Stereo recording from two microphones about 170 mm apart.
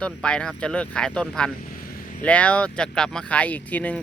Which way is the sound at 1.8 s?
55° left (ahead or behind).